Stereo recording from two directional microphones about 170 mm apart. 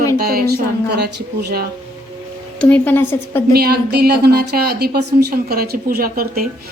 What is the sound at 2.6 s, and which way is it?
Speech, 10° left (ahead or behind).